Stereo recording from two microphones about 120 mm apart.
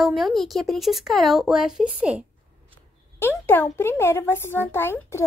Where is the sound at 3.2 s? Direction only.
15° left (ahead or behind).